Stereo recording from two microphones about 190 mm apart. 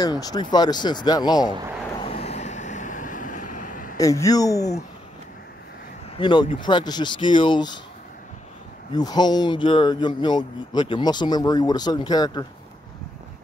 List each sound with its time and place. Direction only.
0.0 s speech: 20° left (ahead or behind)
2.0 s vehicle: 30° left (ahead or behind)
4.0 s speech: 15° left (ahead or behind)
6.1 s speech: 25° left (ahead or behind)
8.9 s speech: 20° left (ahead or behind)